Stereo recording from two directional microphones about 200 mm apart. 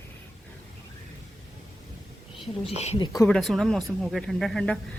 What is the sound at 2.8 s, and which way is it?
Speech, 30° left (ahead or behind).